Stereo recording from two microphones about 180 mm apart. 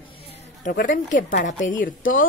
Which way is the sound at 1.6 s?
90° left.